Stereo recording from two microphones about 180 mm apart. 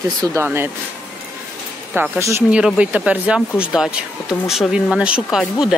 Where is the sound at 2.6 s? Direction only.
5° right (ahead or behind).